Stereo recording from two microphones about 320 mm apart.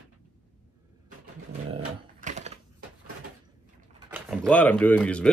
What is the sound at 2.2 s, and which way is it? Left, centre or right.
Typewriter, right.